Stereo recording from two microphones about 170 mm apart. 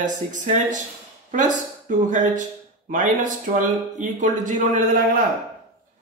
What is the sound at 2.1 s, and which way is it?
Speech, 50° right (ahead or behind).